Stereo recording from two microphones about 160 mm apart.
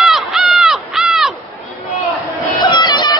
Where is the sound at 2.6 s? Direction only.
25° left (ahead or behind).